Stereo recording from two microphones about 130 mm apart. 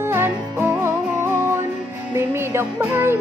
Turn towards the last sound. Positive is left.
turn(degrees=-15)  # may be behind; listen again after turning